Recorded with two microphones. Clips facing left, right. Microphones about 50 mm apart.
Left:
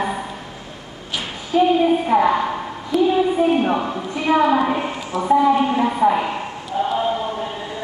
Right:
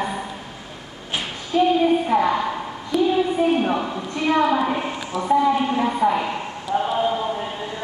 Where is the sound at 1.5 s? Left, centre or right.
Centre.